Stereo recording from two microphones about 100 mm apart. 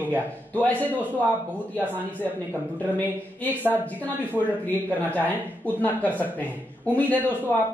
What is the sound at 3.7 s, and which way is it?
Speech, 20° left (ahead or behind).